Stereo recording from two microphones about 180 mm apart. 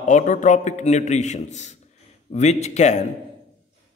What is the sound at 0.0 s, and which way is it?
A man's voice, 45° left (ahead or behind).